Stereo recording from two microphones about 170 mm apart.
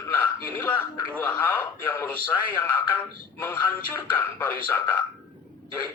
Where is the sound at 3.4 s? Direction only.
10° left (ahead or behind).